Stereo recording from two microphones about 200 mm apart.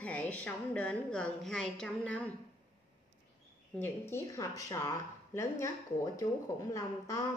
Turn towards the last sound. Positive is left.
turn(degrees=15)  # may be behind; listen again after turning